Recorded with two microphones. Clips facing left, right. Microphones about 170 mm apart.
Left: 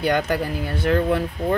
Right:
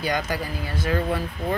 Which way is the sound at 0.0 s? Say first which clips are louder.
Left 5 dB; 60° left (ahead or behind).